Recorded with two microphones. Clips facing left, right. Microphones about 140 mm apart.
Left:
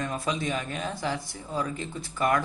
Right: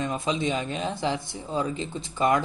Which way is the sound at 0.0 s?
20° right (ahead or behind).